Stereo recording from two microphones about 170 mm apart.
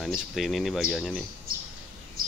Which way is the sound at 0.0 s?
Centre (ahead or behind).